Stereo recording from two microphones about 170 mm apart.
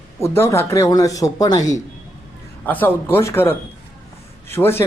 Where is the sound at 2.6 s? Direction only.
10° left (ahead or behind).